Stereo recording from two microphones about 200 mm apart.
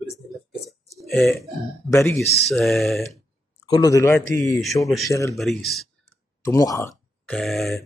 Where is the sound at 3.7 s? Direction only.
15° left (ahead or behind).